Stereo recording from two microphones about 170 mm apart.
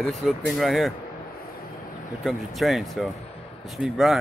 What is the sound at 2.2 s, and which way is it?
Speech, centre (ahead or behind).